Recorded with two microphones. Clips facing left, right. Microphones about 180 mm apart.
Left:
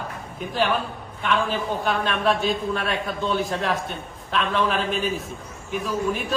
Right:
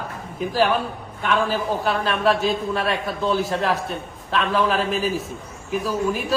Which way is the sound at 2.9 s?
Centre (ahead or behind).